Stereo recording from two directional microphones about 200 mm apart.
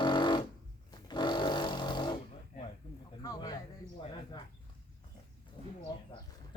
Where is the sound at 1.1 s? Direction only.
20° left (ahead or behind).